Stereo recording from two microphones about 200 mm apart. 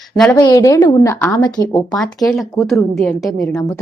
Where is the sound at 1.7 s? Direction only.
Centre (ahead or behind).